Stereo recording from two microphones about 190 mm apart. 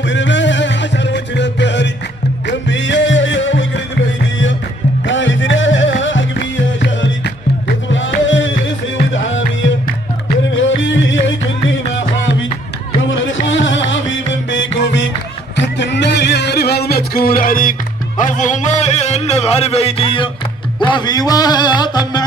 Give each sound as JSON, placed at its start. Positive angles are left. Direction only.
{"t": 0.0, "sound": "music", "side_deg": 75}
{"t": 5.0, "sound": "music", "side_deg": 75}
{"t": 10.5, "sound": "music", "side_deg": 80}